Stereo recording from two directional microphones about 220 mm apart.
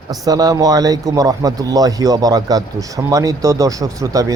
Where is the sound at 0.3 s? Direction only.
15° right (ahead or behind).